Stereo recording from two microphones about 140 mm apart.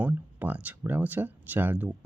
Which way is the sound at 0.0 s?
10° right (ahead or behind).